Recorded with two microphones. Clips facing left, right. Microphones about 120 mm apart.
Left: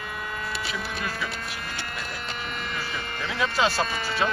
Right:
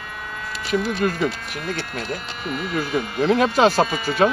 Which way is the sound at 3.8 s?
5° right (ahead or behind).